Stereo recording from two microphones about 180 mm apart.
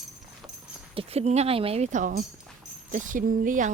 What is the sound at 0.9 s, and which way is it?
Speech, 35° right (ahead or behind).